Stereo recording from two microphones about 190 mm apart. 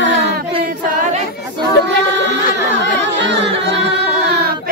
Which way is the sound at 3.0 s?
70° right (ahead or behind).